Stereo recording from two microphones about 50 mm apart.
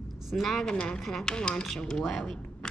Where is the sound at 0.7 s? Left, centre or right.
Centre.